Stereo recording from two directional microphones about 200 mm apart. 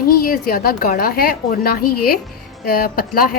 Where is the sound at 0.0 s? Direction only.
45° left (ahead or behind).